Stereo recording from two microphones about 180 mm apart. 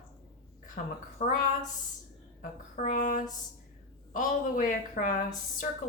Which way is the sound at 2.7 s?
45° left (ahead or behind).